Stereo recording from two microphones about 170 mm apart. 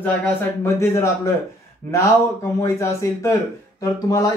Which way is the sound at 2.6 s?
15° left (ahead or behind).